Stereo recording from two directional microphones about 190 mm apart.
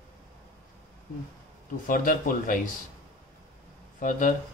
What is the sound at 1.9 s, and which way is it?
Speech, 45° left (ahead or behind).